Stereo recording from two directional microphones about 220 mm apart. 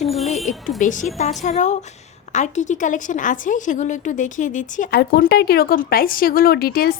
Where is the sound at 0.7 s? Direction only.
35° left (ahead or behind).